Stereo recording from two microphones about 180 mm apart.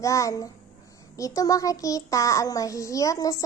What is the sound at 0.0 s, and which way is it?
Speech, 20° left (ahead or behind).